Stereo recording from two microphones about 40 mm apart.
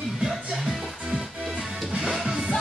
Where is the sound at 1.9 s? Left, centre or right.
Centre.